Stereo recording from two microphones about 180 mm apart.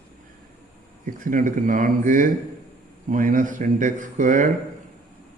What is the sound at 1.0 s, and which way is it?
A man's voice, 50° right (ahead or behind).